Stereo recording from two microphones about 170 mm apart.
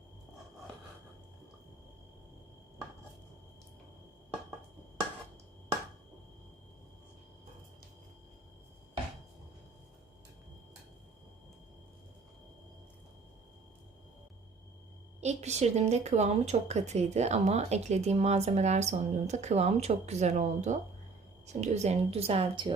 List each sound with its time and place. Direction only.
15.2 s speech: 40° right (ahead or behind)